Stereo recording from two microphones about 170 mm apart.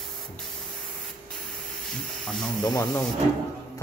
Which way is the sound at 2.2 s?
5° left (ahead or behind).